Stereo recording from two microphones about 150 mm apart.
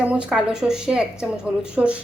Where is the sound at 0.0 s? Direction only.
10° right (ahead or behind).